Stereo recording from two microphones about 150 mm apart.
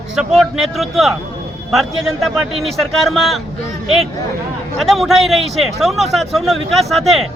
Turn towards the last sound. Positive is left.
turn(degrees=0)  # may be behind; listen again after turning